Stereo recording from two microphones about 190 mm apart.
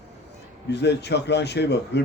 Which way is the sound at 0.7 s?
65° left (ahead or behind).